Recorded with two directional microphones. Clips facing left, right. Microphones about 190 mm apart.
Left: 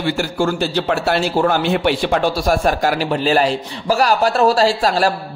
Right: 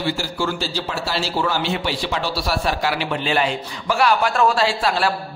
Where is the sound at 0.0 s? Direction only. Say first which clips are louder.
Left 5 dB; 55° left (ahead or behind).